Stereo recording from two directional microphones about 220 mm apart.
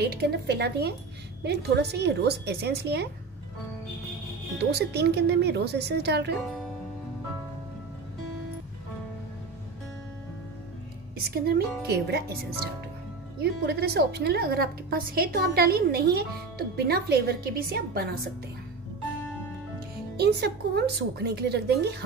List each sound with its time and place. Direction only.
0.0 s a woman's voice: 45° right (ahead or behind)
4.6 s a woman's voice: 50° right (ahead or behind)
11.2 s a woman's voice: 45° right (ahead or behind)
13.4 s a woman's voice: 45° right (ahead or behind)
20.2 s a woman's voice: 45° right (ahead or behind)